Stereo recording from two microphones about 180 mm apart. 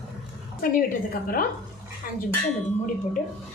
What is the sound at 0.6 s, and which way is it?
Speech, 55° left (ahead or behind).